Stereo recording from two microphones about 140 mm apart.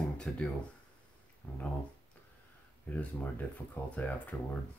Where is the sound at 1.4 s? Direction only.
15° left (ahead or behind).